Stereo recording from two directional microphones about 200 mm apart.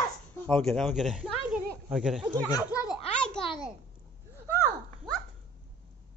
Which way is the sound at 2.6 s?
20° left (ahead or behind).